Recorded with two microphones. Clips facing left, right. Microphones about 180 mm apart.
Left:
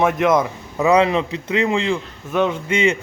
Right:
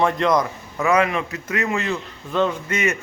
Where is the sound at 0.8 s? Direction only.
20° left (ahead or behind).